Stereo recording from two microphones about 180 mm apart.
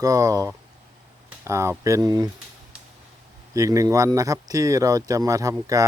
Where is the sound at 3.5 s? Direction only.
20° right (ahead or behind).